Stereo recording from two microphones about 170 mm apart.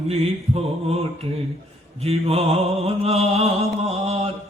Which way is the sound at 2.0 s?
35° right (ahead or behind).